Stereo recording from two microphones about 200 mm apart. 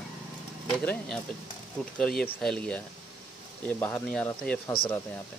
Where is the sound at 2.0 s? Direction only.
5° left (ahead or behind).